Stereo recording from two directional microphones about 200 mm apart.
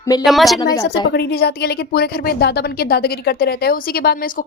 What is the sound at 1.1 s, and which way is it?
Speech, 55° left (ahead or behind).